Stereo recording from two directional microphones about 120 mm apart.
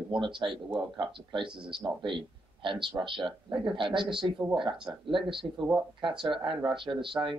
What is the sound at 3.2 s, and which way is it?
Speech, 5° right (ahead or behind).